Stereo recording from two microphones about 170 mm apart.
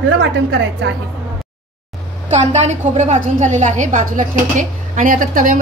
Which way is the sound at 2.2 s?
40° right (ahead or behind).